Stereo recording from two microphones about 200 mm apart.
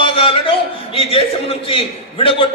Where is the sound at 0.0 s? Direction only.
25° left (ahead or behind).